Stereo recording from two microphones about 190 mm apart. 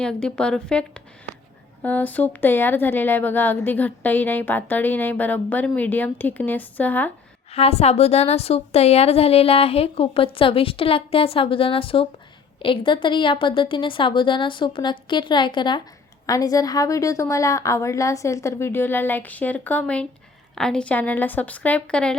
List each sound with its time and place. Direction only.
0.0 s a woman's voice: 5° left (ahead or behind)
7.5 s a woman's voice: 30° left (ahead or behind); by 22.2 s 5° left (ahead or behind)